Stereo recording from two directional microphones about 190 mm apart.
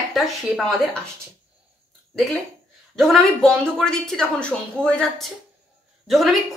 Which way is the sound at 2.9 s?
Centre (ahead or behind).